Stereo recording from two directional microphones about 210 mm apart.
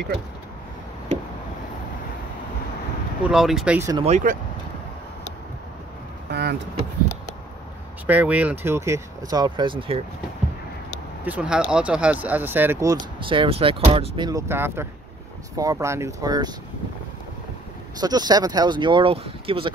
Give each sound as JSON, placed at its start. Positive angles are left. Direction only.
{"t": 3.3, "sound": "speech", "side_deg": 0}
{"t": 3.9, "sound": "speech", "side_deg": -30}
{"t": 6.3, "sound": "speech", "side_deg": -50}
{"t": 8.1, "sound": "speech", "side_deg": -5}
{"t": 11.2, "sound": "speech", "side_deg": -5}
{"t": 18.0, "sound": "speech", "side_deg": -20}